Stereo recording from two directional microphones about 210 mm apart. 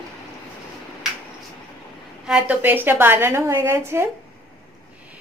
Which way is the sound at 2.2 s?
5° right (ahead or behind).